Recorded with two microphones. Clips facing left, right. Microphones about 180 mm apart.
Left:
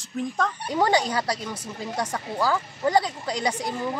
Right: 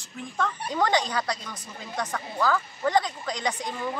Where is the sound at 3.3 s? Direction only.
10° left (ahead or behind).